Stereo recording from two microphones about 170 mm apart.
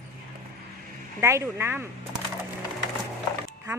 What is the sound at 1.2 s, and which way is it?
Speech, 15° right (ahead or behind).